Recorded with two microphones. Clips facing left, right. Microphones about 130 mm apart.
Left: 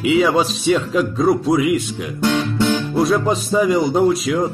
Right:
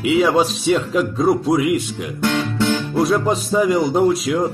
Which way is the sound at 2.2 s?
20° left (ahead or behind).